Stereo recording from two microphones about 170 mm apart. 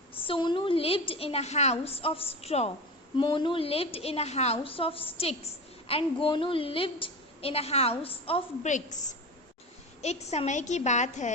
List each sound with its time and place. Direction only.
0.3 s a woman's voice: 30° left (ahead or behind)
8.7 s a woman's voice: 45° left (ahead or behind)